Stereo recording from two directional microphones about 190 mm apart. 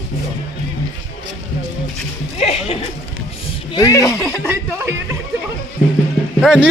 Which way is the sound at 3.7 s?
20° left (ahead or behind).